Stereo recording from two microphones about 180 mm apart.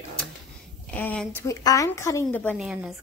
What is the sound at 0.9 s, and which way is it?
A woman's voice, 10° left (ahead or behind).